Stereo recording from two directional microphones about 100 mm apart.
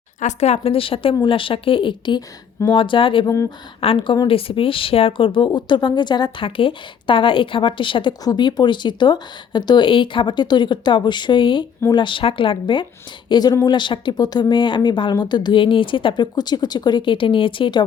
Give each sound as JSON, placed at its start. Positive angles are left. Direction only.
{"t": 0.3, "sound": "a woman's voice", "side_deg": 90}
{"t": 3.2, "sound": "speech", "side_deg": 30}
{"t": 3.8, "sound": "a woman's voice", "side_deg": 65}
{"t": 4.4, "sound": "a woman's voice", "side_deg": 65}
{"t": 6.4, "sound": "a woman's voice", "side_deg": 60}
{"t": 8.2, "sound": "a woman's voice", "side_deg": 45}